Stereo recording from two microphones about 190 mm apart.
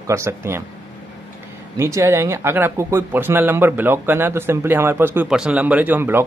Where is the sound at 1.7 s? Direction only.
15° right (ahead or behind).